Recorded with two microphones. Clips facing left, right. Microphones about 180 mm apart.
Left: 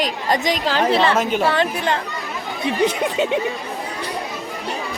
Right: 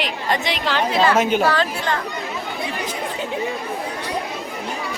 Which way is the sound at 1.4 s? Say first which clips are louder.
Left 1 dB; 20° left (ahead or behind).